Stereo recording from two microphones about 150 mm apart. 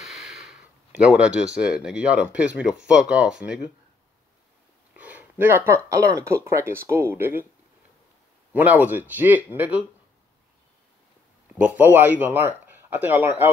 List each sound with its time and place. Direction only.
0.0 s speech: centre (ahead or behind)
4.9 s a sound: 10° right (ahead or behind)
5.9 s speech: 20° right (ahead or behind)
8.5 s speech: 10° right (ahead or behind)
11.5 s speech: 10° right (ahead or behind)